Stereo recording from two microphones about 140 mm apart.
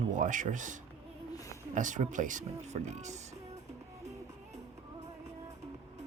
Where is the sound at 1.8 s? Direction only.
65° right (ahead or behind).